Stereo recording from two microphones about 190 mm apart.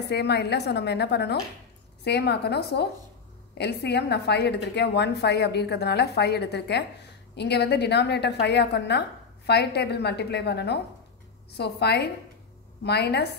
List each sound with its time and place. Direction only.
0.1 s a woman's voice: 60° left (ahead or behind)